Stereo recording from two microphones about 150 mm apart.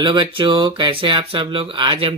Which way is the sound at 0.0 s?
35° right (ahead or behind).